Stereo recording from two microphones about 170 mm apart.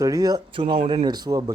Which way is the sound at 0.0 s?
20° right (ahead or behind).